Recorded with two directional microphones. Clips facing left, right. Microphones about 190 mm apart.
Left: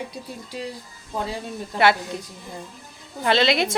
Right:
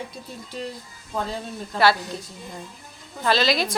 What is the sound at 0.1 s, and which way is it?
Speech, 10° left (ahead or behind).